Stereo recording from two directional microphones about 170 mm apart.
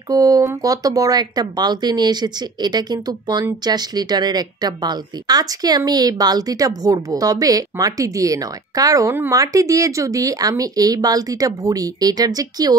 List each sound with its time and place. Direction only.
0.1 s speech: 20° right (ahead or behind)